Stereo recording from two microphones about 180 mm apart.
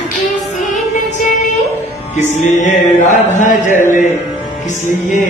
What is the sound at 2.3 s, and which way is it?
Music, 40° left (ahead or behind).